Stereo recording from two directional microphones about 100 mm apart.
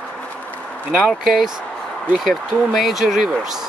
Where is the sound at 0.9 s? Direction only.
5° right (ahead or behind).